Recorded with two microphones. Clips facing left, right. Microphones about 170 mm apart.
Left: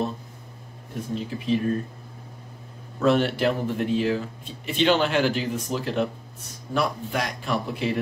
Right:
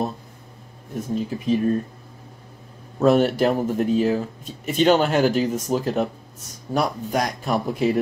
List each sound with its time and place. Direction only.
1.1 s speech: 45° right (ahead or behind)
3.0 s speech: 40° right (ahead or behind)